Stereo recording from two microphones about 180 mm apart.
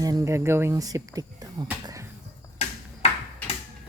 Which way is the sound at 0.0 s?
20° right (ahead or behind).